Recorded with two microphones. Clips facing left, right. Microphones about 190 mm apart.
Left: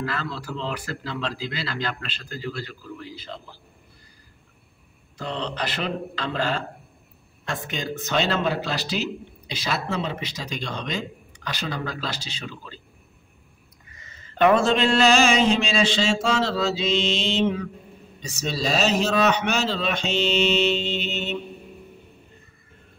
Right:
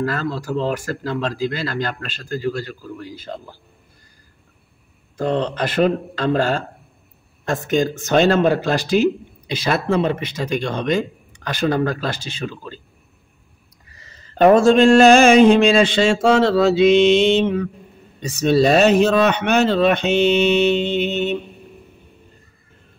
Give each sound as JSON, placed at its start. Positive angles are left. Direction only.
{"t": 0.0, "sound": "speech", "side_deg": -45}
{"t": 5.1, "sound": "speech", "side_deg": -50}
{"t": 13.8, "sound": "mantra", "side_deg": -35}